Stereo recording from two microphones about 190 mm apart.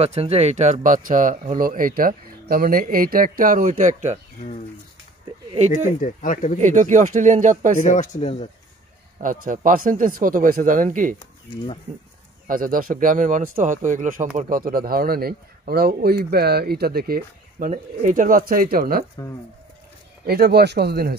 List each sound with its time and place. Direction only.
0.0 s speech: 35° right (ahead or behind)
5.7 s speech: 45° left (ahead or behind)
6.6 s speech: 40° right (ahead or behind)
7.8 s speech: 40° left (ahead or behind)
9.2 s speech: 45° right (ahead or behind)
12.4 s speech: 45° right (ahead or behind)
20.2 s speech: 55° right (ahead or behind)